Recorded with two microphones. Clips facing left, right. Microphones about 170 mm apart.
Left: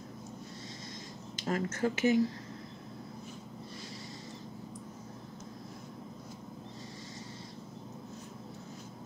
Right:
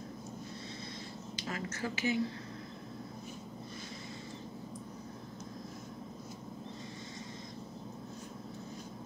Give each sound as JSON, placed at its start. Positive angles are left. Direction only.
{"t": 1.3, "sound": "speech", "side_deg": 45}